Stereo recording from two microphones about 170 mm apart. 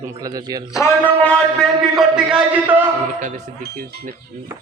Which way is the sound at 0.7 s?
15° left (ahead or behind).